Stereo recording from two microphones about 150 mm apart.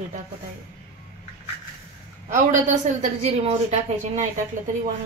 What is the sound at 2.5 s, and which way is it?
A woman's voice, 55° right (ahead or behind).